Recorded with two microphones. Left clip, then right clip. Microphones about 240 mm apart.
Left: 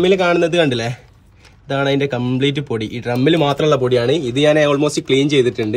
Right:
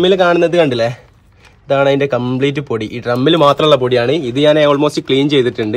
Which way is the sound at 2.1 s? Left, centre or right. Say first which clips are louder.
Right 5 dB; right.